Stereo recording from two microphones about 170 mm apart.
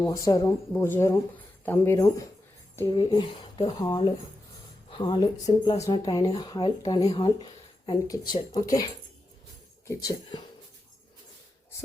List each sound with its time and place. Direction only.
0.0 s speech: 20° left (ahead or behind)
2.9 s speech: 30° left (ahead or behind)
9.8 s speech: 20° left (ahead or behind)